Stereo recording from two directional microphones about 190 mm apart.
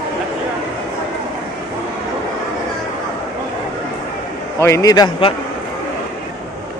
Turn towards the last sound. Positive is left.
turn(degrees=20)  # may be behind; listen again after turning